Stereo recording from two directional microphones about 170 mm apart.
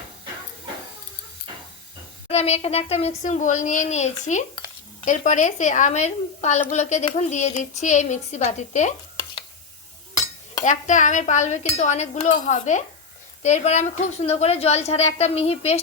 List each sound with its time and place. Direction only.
2.3 s speech: 40° left (ahead or behind)
10.6 s a woman's voice: 45° left (ahead or behind)